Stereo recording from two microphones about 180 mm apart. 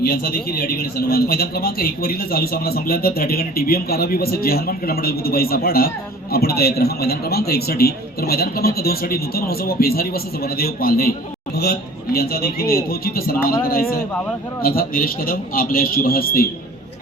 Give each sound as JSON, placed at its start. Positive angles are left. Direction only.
{"t": 0.0, "sound": "a man's voice", "side_deg": 55}